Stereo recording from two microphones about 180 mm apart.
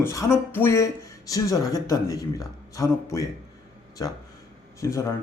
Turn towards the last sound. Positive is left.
turn(degrees=15)  # may be behind; listen again after turning